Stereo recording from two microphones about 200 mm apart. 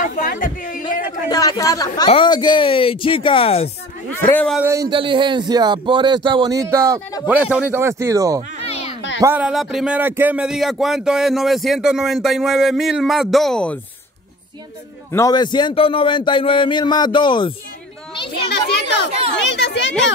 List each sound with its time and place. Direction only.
0.0 s a sound: 45° left (ahead or behind)
1.3 s a man's voice: 20° left (ahead or behind)
4.3 s speech: 5° left (ahead or behind)
4.6 s speech: 20° right (ahead or behind)
8.5 s a sound: 30° left (ahead or behind)
9.2 s speech: 5° right (ahead or behind)
15.0 s a man's voice: 15° left (ahead or behind)
19.3 s speech: 60° left (ahead or behind)